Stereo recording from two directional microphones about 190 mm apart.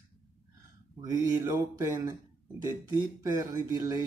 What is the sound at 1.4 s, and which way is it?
Speech, 20° right (ahead or behind).